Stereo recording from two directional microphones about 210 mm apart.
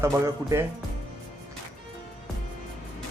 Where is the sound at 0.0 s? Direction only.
15° right (ahead or behind).